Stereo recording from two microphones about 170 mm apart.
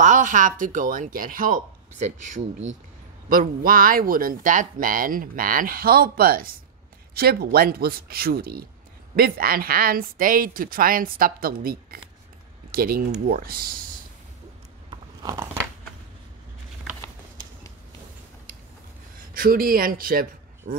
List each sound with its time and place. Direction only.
0.0 s speech: 50° right (ahead or behind)
19.3 s speech: 60° right (ahead or behind)